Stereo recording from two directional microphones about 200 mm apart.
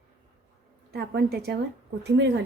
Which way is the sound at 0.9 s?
50° right (ahead or behind).